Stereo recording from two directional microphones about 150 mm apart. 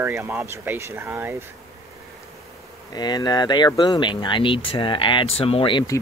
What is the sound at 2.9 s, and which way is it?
Speech, 30° left (ahead or behind).